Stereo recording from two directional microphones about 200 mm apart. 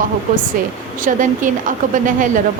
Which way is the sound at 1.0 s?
40° right (ahead or behind).